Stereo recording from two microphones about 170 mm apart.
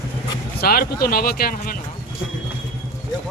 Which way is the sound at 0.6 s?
60° left (ahead or behind).